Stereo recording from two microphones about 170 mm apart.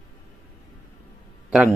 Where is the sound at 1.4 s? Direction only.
5° right (ahead or behind).